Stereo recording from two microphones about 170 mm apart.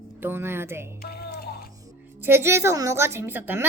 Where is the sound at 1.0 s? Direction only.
70° left (ahead or behind).